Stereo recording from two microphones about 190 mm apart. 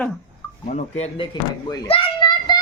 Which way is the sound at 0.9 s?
30° left (ahead or behind).